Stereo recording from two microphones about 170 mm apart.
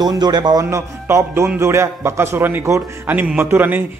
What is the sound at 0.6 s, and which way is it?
A man's voice, 15° right (ahead or behind).